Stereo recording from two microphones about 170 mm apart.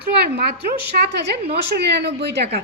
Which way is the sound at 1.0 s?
85° right.